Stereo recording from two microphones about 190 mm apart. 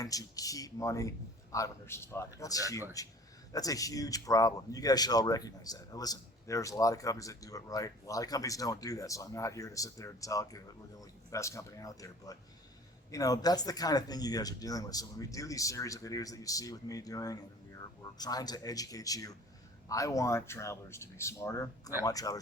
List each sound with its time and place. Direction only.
0.0 s speech: 20° left (ahead or behind)